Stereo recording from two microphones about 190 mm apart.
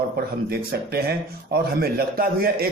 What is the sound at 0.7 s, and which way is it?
A man's voice, 55° right (ahead or behind).